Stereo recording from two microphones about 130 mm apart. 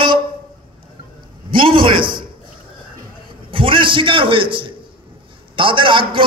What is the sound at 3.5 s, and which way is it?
A man's voice, 40° right (ahead or behind).